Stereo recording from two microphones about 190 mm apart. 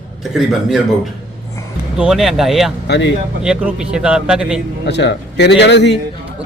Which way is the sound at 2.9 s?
65° left (ahead or behind).